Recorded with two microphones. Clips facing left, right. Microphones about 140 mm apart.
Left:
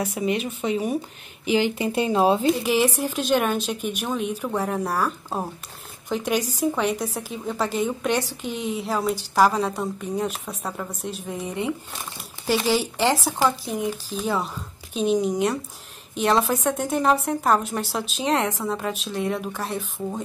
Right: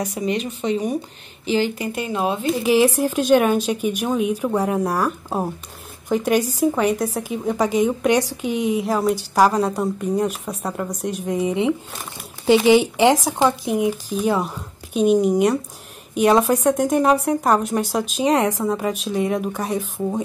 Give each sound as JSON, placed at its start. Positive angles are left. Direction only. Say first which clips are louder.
{"t": 0.0, "sound": "speech", "louder": "right 1 dB", "side_deg": 5}
{"t": 1.9, "sound": "speech", "louder": "left 3 dB", "side_deg": 30}
{"t": 2.6, "sound": "speech", "louder": "right 5 dB", "side_deg": -10}
{"t": 12.4, "sound": "speech", "louder": "right 8 dB", "side_deg": -20}